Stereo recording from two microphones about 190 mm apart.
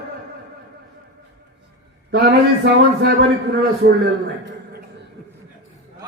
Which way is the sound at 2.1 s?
60° right (ahead or behind).